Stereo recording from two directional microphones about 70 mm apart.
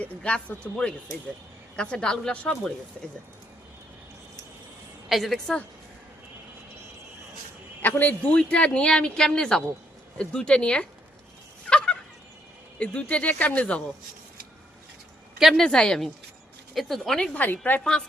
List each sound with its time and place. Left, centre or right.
0.0 s speech: centre
5.0 s a woman's voice: centre
7.8 s a man's voice: left
8.3 s speech: centre
11.7 s turkey: centre
12.8 s speech: centre
15.4 s speech: centre
15.6 s speech: centre
17.3 s a woman's voice: left